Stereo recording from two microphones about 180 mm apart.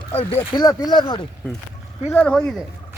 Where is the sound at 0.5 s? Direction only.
20° left (ahead or behind).